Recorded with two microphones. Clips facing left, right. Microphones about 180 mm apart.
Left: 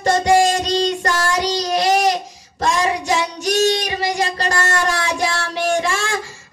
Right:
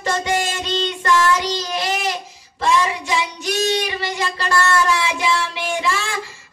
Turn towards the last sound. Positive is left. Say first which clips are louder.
# left 3 dB
turn(degrees=45)  # may be behind; listen again after turning